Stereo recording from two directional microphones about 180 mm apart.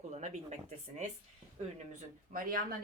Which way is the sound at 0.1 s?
40° right (ahead or behind).